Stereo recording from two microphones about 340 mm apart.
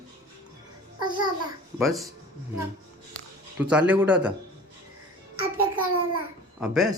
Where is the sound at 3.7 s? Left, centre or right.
Centre.